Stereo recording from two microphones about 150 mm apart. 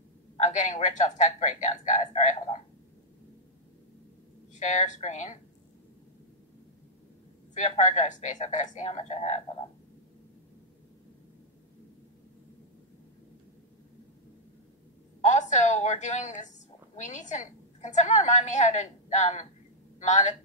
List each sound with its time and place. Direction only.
0.4 s a woman's voice: 55° left (ahead or behind)
4.6 s a woman's voice: 55° left (ahead or behind)
7.5 s a woman's voice: 50° left (ahead or behind)
15.2 s a woman's voice: 50° left (ahead or behind)